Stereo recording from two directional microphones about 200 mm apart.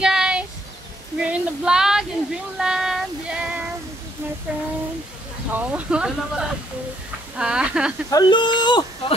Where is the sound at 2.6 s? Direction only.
5° right (ahead or behind).